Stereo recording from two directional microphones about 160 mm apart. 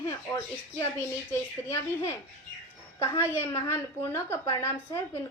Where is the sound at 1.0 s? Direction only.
15° left (ahead or behind).